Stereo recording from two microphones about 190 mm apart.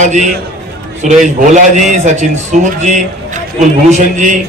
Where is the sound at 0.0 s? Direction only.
40° right (ahead or behind).